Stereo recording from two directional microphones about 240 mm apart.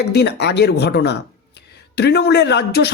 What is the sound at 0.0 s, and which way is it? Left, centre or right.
Speech, left.